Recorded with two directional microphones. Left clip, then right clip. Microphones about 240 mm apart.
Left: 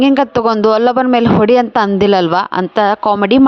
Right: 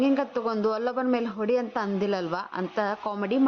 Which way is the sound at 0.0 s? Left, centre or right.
Left.